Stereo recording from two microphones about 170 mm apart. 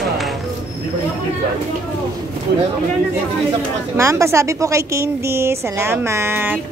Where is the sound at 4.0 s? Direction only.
15° right (ahead or behind).